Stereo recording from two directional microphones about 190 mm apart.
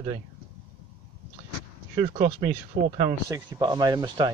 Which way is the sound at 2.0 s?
35° right (ahead or behind).